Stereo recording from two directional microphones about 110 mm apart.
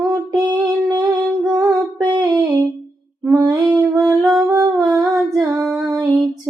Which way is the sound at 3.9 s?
30° right (ahead or behind).